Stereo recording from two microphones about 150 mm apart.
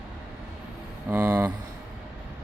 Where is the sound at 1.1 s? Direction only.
25° right (ahead or behind).